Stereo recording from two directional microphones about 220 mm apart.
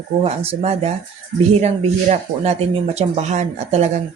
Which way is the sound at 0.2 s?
30° right (ahead or behind).